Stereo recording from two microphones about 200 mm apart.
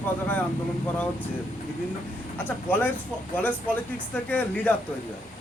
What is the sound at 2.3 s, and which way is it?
Speech, 10° left (ahead or behind).